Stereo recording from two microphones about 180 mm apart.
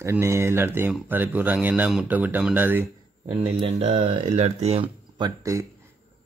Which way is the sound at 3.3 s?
35° right (ahead or behind).